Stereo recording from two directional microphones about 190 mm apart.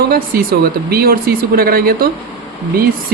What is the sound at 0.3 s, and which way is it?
A woman's voice, 55° right (ahead or behind).